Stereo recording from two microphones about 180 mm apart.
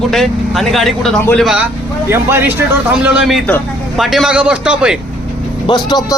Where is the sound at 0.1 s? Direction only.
Centre (ahead or behind).